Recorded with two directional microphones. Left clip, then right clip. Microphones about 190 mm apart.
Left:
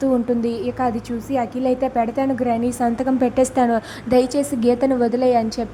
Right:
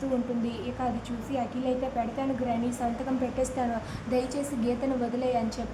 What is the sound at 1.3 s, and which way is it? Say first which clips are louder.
A woman's voice: left 10 dB; 35° left (ahead or behind).